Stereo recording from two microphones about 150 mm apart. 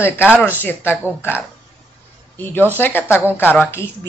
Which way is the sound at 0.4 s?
15° left (ahead or behind).